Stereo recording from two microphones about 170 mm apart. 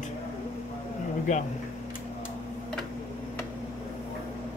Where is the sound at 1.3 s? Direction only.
45° left (ahead or behind).